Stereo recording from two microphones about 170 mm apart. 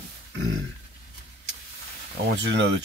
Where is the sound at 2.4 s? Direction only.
90° right.